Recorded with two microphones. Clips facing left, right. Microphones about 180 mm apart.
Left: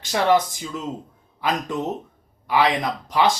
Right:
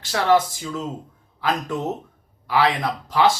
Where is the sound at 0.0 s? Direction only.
20° left (ahead or behind).